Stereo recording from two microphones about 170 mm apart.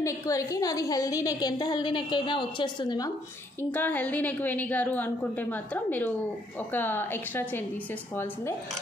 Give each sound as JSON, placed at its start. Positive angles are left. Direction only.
{"t": 0.0, "sound": "a woman's voice", "side_deg": 20}
{"t": 3.7, "sound": "a woman's voice", "side_deg": 10}